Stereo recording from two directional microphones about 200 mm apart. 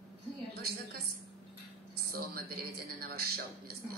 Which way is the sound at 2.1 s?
50° right (ahead or behind).